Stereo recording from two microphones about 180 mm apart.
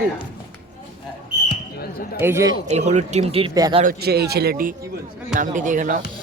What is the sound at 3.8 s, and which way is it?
A man's voice, 65° right (ahead or behind).